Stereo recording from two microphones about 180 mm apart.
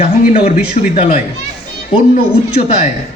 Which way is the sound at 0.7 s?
45° left (ahead or behind).